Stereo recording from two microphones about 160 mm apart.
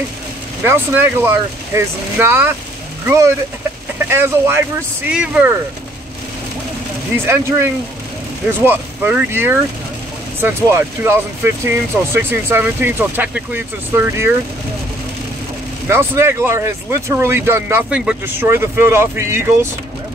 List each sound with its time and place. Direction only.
0.7 s speech: 15° right (ahead or behind)
4.1 s speech: 15° right (ahead or behind)
7.2 s speech: 15° right (ahead or behind)
15.9 s speech: 15° right (ahead or behind)